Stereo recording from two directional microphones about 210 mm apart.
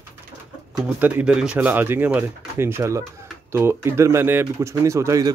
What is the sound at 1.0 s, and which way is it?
Speech, 5° right (ahead or behind).